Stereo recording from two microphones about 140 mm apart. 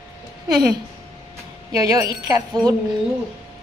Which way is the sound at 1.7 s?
25° right (ahead or behind).